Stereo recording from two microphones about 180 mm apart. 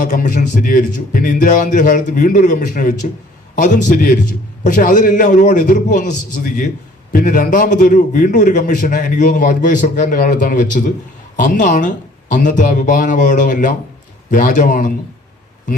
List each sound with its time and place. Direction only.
0.0 s a man's voice: 45° left (ahead or behind)